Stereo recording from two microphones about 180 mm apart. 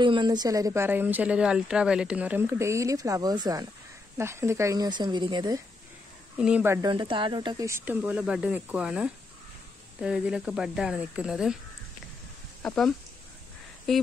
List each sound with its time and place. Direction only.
0.0 s speech: 25° right (ahead or behind)
6.3 s speech: 5° right (ahead or behind)
6.9 s speech: 25° right (ahead or behind); by 11.5 s 5° right (ahead or behind)
12.6 s speech: centre (ahead or behind)